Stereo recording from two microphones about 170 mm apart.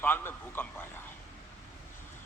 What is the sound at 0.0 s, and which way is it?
Speech, 15° left (ahead or behind).